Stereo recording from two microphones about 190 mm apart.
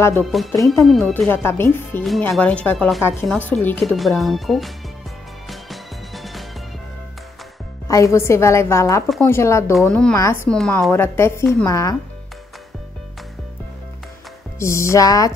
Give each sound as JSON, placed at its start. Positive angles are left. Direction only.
{"t": 0.2, "sound": "speech", "side_deg": 0}
{"t": 2.0, "sound": "speech", "side_deg": 0}
{"t": 5.5, "sound": "music", "side_deg": 0}
{"t": 7.9, "sound": "speech", "side_deg": 15}
{"t": 9.8, "sound": "speech", "side_deg": 5}
{"t": 10.1, "sound": "speech", "side_deg": 15}
{"t": 10.5, "sound": "speech", "side_deg": 5}
{"t": 10.9, "sound": "speech", "side_deg": 15}
{"t": 14.6, "sound": "speech", "side_deg": 15}